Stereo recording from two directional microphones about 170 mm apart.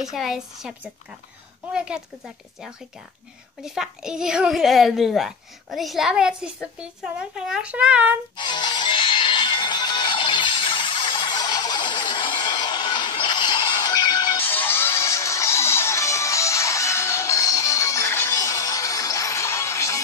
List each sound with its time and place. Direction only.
0.1 s a child's voice: centre (ahead or behind)
8.4 s music: 25° left (ahead or behind)
14.4 s music: 10° left (ahead or behind)